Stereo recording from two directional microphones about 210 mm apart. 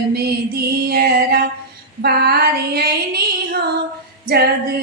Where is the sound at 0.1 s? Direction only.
50° right (ahead or behind).